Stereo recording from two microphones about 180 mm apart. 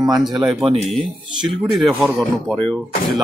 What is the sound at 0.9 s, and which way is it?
Speech, 30° right (ahead or behind).